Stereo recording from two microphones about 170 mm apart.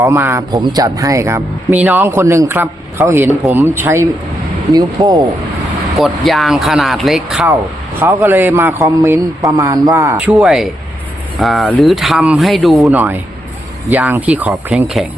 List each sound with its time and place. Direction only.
0.0 s speech: 15° right (ahead or behind)
6.0 s speech: centre (ahead or behind)
7.9 s speech: 15° right (ahead or behind)
10.2 s speech: 5° right (ahead or behind)